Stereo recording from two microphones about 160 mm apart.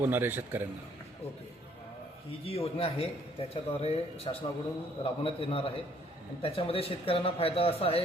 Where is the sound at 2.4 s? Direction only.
35° left (ahead or behind).